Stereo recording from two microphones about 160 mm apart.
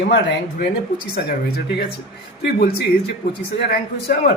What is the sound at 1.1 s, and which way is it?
A man's voice, 85° left.